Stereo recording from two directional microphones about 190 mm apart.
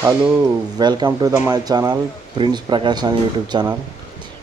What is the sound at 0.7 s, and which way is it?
Speech, 20° right (ahead or behind).